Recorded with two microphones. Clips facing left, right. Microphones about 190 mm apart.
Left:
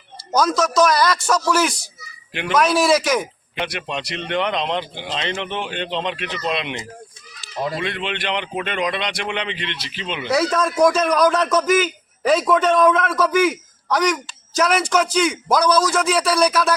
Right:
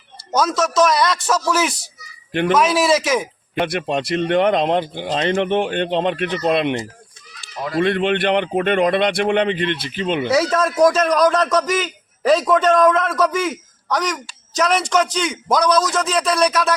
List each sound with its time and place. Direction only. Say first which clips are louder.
0.3 s a man's voice: even; centre (ahead or behind)
2.3 s speech: right 6 dB; 50° right (ahead or behind)
2.6 s a man's voice: left 2 dB; centre (ahead or behind)
3.5 s speech: right 7 dB; 50° right (ahead or behind)
10.3 s a man's voice: even; 5° right (ahead or behind)